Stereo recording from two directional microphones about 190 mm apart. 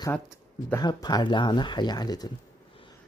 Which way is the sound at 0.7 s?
20° left (ahead or behind).